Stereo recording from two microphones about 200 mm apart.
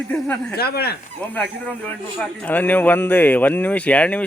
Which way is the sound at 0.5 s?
55° left (ahead or behind).